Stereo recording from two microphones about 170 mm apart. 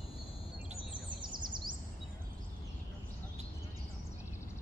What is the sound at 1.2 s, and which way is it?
Bird vocalization, 25° right (ahead or behind).